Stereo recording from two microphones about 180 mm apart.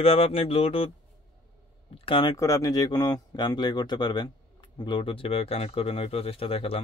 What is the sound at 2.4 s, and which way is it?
Speech, 20° left (ahead or behind).